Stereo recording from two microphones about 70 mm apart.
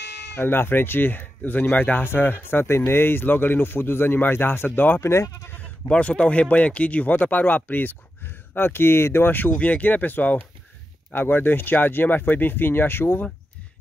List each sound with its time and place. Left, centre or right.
0.4 s speech: left
5.0 s speech: left
5.9 s speech: centre; by 13.2 s left